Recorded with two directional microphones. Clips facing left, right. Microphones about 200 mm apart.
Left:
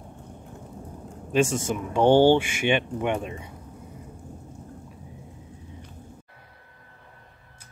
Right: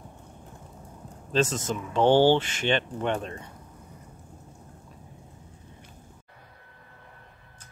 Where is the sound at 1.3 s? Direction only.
10° left (ahead or behind).